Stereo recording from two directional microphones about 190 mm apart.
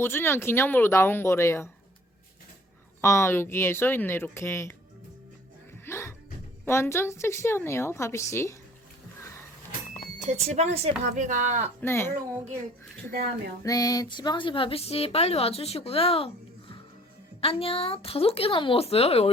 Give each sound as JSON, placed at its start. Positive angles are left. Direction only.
{"t": 0.0, "sound": "a woman's voice", "side_deg": 10}
{"t": 3.0, "sound": "a woman's voice", "side_deg": 15}
{"t": 5.8, "sound": "music", "side_deg": 15}
{"t": 6.7, "sound": "a woman's voice", "side_deg": 15}
{"t": 10.2, "sound": "speech", "side_deg": -35}
{"t": 11.8, "sound": "a woman's voice", "side_deg": 10}
{"t": 13.1, "sound": "a woman's voice", "side_deg": -55}
{"t": 13.6, "sound": "a woman's voice", "side_deg": 20}